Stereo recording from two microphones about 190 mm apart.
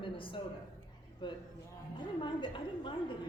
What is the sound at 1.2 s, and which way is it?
A woman's voice, 25° left (ahead or behind).